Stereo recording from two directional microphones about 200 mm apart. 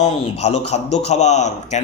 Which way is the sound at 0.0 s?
35° left (ahead or behind).